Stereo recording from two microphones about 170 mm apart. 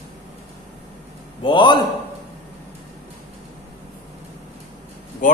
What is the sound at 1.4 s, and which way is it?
Speech, 30° left (ahead or behind).